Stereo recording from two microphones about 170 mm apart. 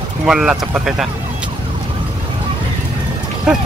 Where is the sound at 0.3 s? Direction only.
5° right (ahead or behind).